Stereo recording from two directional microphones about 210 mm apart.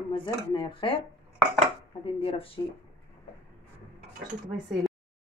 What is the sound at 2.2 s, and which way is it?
Speech, 25° left (ahead or behind).